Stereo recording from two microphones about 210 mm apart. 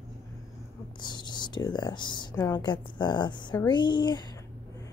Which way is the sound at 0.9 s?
20° left (ahead or behind).